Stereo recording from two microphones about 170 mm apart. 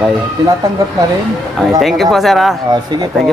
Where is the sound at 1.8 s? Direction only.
Centre (ahead or behind).